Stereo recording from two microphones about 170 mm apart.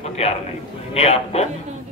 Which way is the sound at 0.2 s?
35° left (ahead or behind).